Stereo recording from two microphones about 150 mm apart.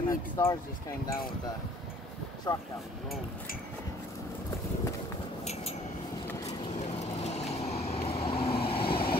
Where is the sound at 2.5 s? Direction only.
25° left (ahead or behind).